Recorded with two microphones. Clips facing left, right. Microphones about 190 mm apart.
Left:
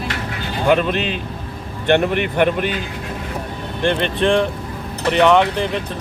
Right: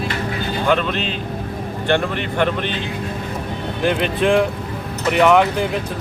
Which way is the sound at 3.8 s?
5° right (ahead or behind).